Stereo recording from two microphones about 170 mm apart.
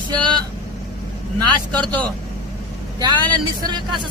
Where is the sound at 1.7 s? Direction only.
10° left (ahead or behind).